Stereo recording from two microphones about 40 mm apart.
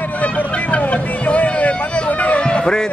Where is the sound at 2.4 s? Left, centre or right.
Left.